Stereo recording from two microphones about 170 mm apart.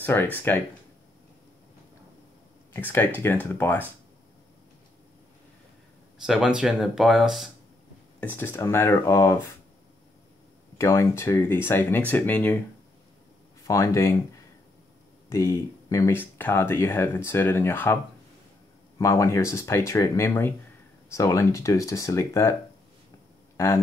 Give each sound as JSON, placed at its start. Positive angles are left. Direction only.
{"t": 0.1, "sound": "speech", "side_deg": 10}
{"t": 2.7, "sound": "speech", "side_deg": 10}
{"t": 6.2, "sound": "speech", "side_deg": -5}
{"t": 8.2, "sound": "speech", "side_deg": 10}
{"t": 10.8, "sound": "speech", "side_deg": 15}
{"t": 13.7, "sound": "speech", "side_deg": 15}
{"t": 15.2, "sound": "speech", "side_deg": 15}
{"t": 18.9, "sound": "speech", "side_deg": 20}